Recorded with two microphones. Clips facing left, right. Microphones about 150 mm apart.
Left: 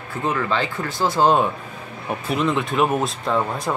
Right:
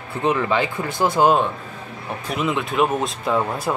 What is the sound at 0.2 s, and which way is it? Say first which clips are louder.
Speech: right 3 dB; 20° right (ahead or behind).